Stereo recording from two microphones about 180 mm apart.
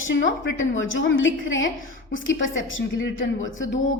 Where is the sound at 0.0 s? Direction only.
90° left.